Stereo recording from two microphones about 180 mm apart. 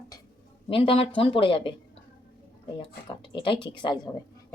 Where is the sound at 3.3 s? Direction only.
30° left (ahead or behind).